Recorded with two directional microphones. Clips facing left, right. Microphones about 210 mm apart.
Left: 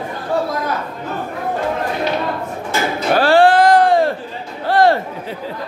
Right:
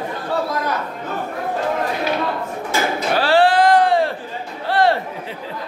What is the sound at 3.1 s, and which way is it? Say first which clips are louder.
Music: left 4 dB; 45° left (ahead or behind).